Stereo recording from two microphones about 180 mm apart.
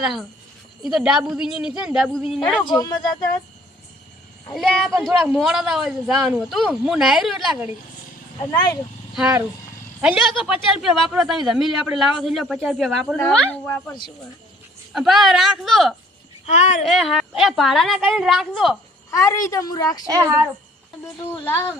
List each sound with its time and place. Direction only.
0.0 s speech: centre (ahead or behind)
2.7 s a woman's voice: 20° left (ahead or behind)
4.5 s speech: centre (ahead or behind)
8.4 s a woman's voice: 25° left (ahead or behind)
9.1 s speech: 5° right (ahead or behind); by 13.9 s 10° left (ahead or behind)
14.9 s speech: centre (ahead or behind)
16.5 s speech: 40° left (ahead or behind)
16.8 s speech: centre (ahead or behind)
19.1 s a woman's voice: 15° left (ahead or behind)
20.1 s speech: 20° right (ahead or behind)
21.3 s speech: 10° left (ahead or behind)